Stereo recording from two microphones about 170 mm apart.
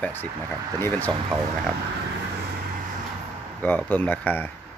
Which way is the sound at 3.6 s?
10° left (ahead or behind).